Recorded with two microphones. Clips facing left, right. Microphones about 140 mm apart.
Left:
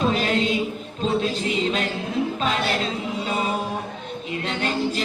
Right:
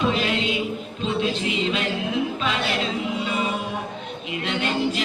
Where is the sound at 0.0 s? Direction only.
40° left (ahead or behind).